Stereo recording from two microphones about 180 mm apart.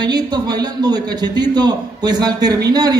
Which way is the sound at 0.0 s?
25° right (ahead or behind).